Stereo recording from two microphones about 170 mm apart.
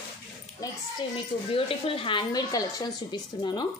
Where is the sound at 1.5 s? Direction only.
30° left (ahead or behind).